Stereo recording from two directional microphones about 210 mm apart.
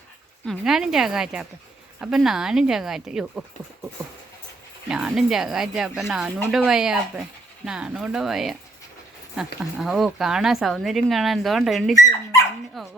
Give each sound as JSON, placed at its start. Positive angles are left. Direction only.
{"t": 0.4, "sound": "speech", "side_deg": 0}
{"t": 4.9, "sound": "speech", "side_deg": -5}
{"t": 12.0, "sound": "speech", "side_deg": 15}
{"t": 12.8, "sound": "speech", "side_deg": 0}